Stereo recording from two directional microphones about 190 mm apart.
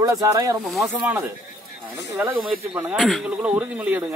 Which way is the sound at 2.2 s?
10° right (ahead or behind).